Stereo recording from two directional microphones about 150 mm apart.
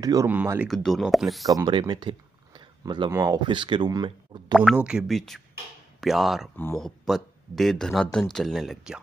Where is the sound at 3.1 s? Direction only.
20° right (ahead or behind).